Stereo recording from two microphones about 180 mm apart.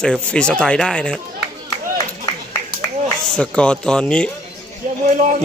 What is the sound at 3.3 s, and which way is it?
Speech, 5° left (ahead or behind).